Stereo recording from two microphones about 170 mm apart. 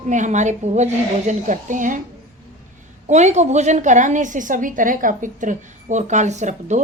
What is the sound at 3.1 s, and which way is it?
A woman's voice, 45° right (ahead or behind).